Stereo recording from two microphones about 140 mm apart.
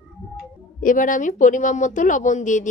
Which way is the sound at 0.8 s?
70° left (ahead or behind).